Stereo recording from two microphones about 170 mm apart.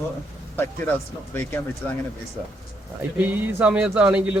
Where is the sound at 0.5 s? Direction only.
10° left (ahead or behind).